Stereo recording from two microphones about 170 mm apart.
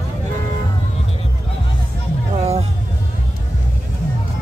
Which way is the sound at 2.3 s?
40° right (ahead or behind).